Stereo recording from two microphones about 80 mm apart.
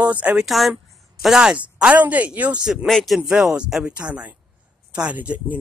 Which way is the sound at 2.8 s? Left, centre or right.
Centre.